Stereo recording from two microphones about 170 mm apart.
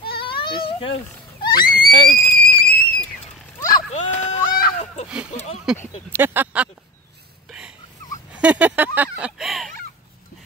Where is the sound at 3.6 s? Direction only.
20° left (ahead or behind).